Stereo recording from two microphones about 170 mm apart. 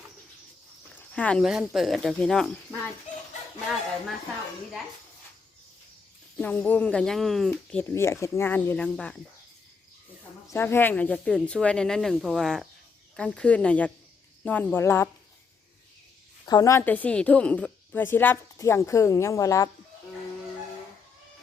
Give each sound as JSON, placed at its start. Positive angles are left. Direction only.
{"t": 0.9, "sound": "speech", "side_deg": 5}
{"t": 6.3, "sound": "a woman's voice", "side_deg": 5}
{"t": 10.5, "sound": "a woman's voice", "side_deg": 15}
{"t": 16.5, "sound": "a woman's voice", "side_deg": 20}